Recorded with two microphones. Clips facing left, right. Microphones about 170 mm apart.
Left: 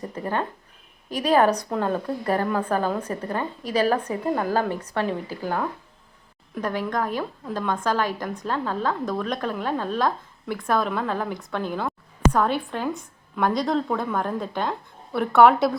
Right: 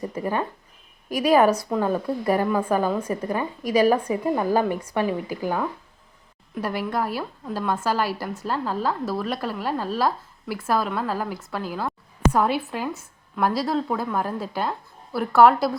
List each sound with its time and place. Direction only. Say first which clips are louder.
0.0 s a woman's voice: right 1 dB; 10° right (ahead or behind)